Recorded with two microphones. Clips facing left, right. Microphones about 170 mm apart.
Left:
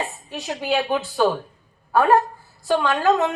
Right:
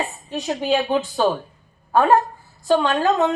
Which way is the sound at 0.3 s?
20° right (ahead or behind).